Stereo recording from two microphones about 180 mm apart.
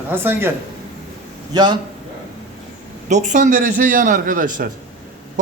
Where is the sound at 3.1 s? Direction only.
40° right (ahead or behind).